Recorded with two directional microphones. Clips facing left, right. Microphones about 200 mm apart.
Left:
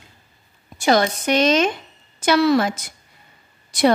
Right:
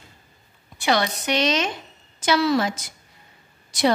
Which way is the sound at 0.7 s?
45° left (ahead or behind).